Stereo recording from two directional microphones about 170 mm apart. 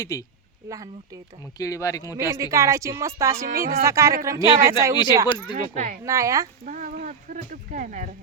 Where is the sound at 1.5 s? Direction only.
20° left (ahead or behind).